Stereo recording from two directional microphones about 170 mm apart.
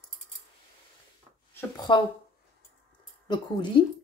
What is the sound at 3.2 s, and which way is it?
Speech, 25° left (ahead or behind).